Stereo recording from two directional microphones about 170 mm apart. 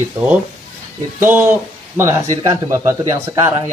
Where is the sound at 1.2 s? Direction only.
10° right (ahead or behind).